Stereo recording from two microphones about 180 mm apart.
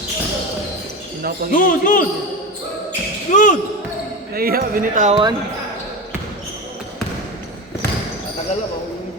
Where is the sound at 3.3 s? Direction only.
45° left (ahead or behind).